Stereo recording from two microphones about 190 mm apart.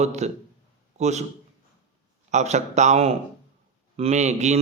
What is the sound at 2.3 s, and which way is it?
Speech, 35° right (ahead or behind).